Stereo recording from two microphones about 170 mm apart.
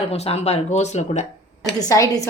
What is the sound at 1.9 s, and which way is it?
Speech, 20° left (ahead or behind).